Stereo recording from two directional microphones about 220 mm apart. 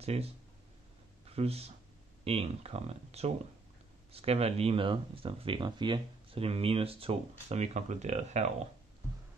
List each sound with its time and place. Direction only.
0.0 s speech: 30° right (ahead or behind)